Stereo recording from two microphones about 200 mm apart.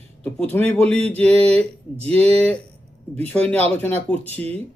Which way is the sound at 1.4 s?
30° right (ahead or behind).